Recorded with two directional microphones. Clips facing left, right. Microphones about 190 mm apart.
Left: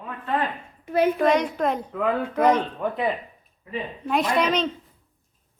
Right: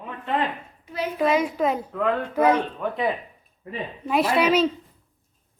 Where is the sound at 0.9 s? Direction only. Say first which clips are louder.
Left 8 dB; 55° left (ahead or behind).